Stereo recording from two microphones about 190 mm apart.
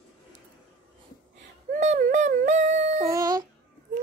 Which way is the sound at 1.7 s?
40° right (ahead or behind).